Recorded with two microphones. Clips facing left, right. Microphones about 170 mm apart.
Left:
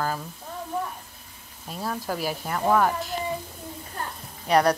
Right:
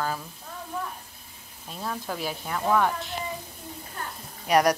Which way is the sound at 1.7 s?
5° left (ahead or behind).